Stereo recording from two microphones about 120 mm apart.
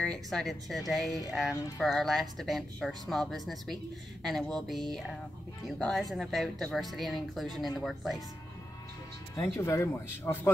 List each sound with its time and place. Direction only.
0.0 s speech: 5° left (ahead or behind)
9.3 s speech: 30° left (ahead or behind)